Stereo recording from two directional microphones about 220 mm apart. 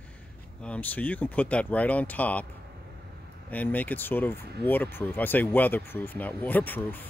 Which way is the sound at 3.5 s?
5° left (ahead or behind).